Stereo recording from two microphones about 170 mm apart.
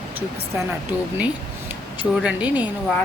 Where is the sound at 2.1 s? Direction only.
5° right (ahead or behind).